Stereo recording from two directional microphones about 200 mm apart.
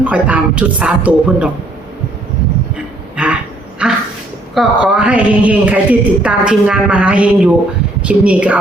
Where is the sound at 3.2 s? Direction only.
5° right (ahead or behind).